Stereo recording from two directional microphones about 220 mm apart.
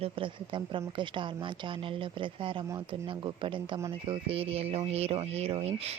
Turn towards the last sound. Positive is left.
turn(degrees=-30)  # may be behind; listen again after turning